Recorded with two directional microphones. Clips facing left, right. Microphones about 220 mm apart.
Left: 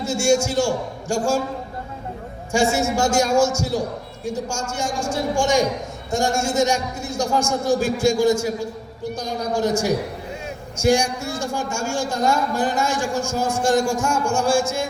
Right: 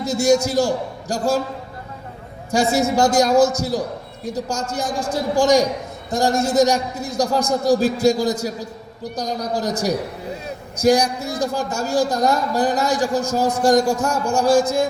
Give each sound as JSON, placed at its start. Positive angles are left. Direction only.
{"t": 0.0, "sound": "speech", "side_deg": -35}
{"t": 2.5, "sound": "speech", "side_deg": -35}